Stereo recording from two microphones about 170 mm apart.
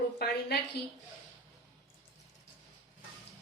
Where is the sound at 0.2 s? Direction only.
65° left (ahead or behind).